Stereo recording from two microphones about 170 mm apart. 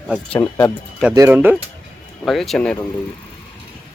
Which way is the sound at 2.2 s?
Centre (ahead or behind).